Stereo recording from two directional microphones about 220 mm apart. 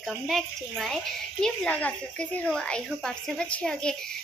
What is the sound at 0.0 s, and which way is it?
Speech, centre (ahead or behind).